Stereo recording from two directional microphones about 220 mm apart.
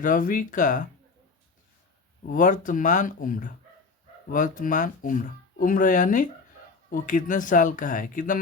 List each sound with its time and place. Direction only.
0.0 s speech: 35° left (ahead or behind)
2.2 s speech: 35° left (ahead or behind)